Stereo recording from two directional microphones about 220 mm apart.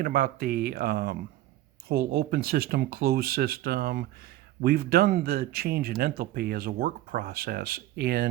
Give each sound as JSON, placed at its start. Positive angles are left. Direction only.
{"t": 0.0, "sound": "speech", "side_deg": -40}